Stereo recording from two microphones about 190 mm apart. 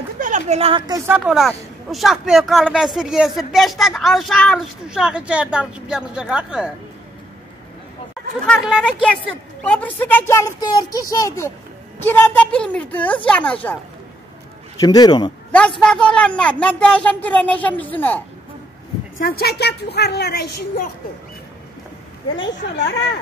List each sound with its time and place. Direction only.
0.2 s speech: 40° right (ahead or behind); by 6.7 s 5° right (ahead or behind)
8.8 s a woman's voice: 5° left (ahead or behind)
14.8 s speech: 20° left (ahead or behind)
15.5 s a woman's voice: 5° left (ahead or behind)
19.1 s a woman's voice: 50° left (ahead or behind)